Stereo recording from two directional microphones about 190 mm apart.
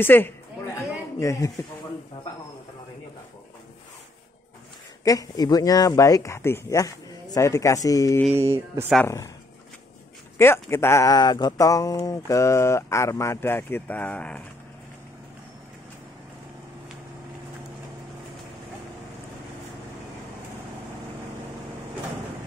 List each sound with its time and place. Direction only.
0.0 s speech: 10° left (ahead or behind)
5.0 s speech: 20° left (ahead or behind)
8.4 s speech: 15° right (ahead or behind)
9.0 s speech: 15° left (ahead or behind)
10.3 s speech: 10° left (ahead or behind)